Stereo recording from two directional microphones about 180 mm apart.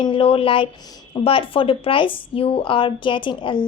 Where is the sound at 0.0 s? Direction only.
30° left (ahead or behind).